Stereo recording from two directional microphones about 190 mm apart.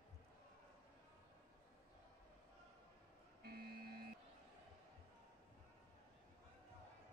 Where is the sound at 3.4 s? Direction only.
55° right (ahead or behind).